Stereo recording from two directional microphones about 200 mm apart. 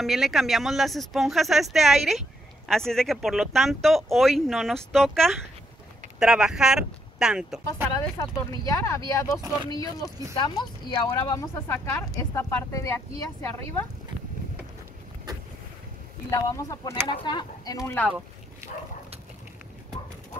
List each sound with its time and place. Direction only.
0.0 s speech: centre (ahead or behind)
8.6 s speech: 15° left (ahead or behind)
16.3 s speech: 15° left (ahead or behind)